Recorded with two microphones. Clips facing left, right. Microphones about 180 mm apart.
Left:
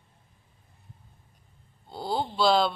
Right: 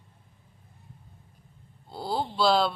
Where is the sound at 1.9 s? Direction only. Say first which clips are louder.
Left 1 dB; centre (ahead or behind).